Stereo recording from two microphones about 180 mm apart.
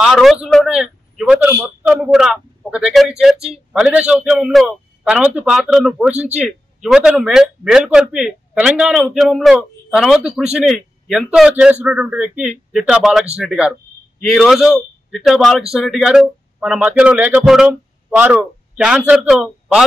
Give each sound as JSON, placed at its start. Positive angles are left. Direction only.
{"t": 0.0, "sound": "a man's voice", "side_deg": 0}
{"t": 3.3, "sound": "speech", "side_deg": -35}
{"t": 3.7, "sound": "a man's voice", "side_deg": -5}